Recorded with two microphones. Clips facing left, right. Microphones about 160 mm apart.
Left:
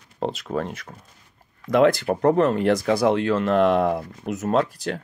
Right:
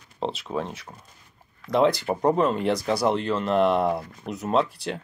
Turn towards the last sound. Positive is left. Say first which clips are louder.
# left 2 dB
turn(degrees=45)  # may be behind; listen again after turning